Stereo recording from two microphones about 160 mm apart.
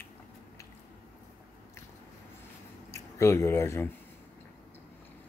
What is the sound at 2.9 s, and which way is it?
Speech, 20° left (ahead or behind).